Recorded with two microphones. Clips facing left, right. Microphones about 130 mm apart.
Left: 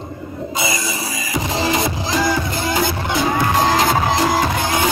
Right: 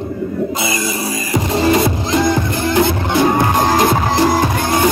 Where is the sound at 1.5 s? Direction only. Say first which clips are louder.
Right 6 dB; 55° right (ahead or behind).